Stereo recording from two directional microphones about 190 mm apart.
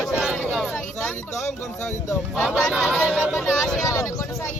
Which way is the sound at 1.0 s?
5° left (ahead or behind).